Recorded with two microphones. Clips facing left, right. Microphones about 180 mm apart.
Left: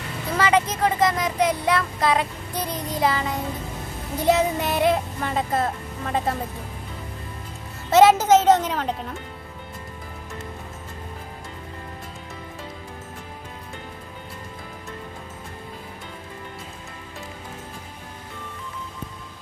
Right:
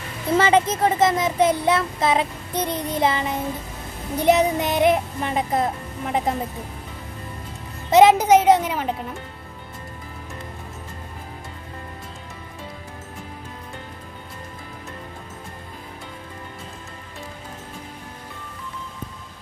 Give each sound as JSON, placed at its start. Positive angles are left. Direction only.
{"t": 0.4, "sound": "speech", "side_deg": -25}
{"t": 7.9, "sound": "speech", "side_deg": -15}